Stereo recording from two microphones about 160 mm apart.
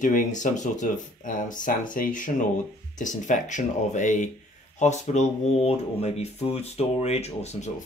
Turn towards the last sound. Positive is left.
turn(degrees=45)  # may be behind; listen again after turning